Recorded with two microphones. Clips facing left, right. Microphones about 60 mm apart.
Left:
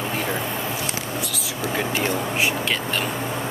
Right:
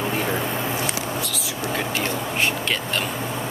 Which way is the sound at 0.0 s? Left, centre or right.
Centre.